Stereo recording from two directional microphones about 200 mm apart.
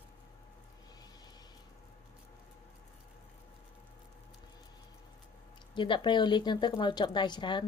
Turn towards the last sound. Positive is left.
turn(degrees=25)  # may be behind; listen again after turning